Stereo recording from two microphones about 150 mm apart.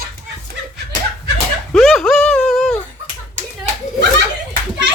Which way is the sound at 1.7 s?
Centre (ahead or behind).